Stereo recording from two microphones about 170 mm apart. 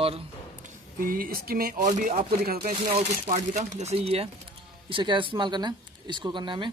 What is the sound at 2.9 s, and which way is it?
Speech, 40° right (ahead or behind).